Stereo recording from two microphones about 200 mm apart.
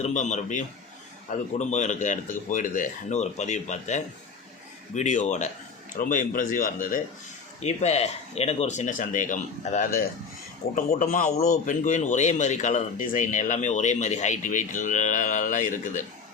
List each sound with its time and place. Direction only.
0.0 s speech: 35° left (ahead or behind)